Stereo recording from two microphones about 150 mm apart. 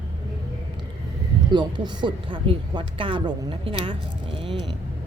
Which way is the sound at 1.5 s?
30° right (ahead or behind).